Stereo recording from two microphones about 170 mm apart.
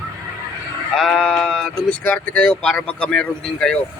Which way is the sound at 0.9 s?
5° left (ahead or behind).